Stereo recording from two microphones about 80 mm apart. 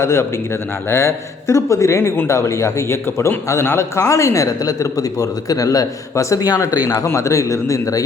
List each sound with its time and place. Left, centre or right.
0.0 s speech: left